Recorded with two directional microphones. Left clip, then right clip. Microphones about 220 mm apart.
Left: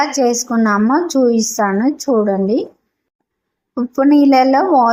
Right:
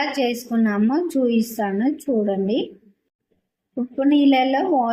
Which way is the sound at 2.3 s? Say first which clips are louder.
Left 6 dB; 30° left (ahead or behind).